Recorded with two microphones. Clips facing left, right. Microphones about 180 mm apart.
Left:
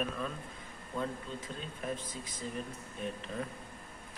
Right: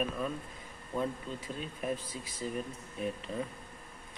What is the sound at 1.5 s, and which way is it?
Speech, 15° right (ahead or behind).